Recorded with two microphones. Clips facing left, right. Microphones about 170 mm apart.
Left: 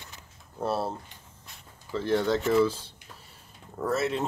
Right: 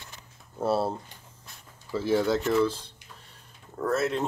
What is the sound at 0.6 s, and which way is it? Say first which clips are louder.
Speech: right 3 dB; 10° right (ahead or behind).